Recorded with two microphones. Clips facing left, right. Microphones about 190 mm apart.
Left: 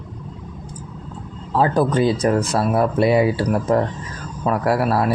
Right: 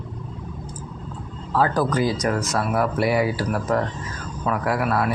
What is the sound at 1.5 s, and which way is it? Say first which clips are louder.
Speech: left 3 dB; 25° left (ahead or behind).